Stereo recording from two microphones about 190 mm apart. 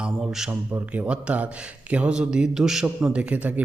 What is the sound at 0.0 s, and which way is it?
A man's voice, 5° right (ahead or behind).